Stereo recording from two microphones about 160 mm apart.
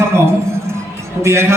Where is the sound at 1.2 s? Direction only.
15° right (ahead or behind).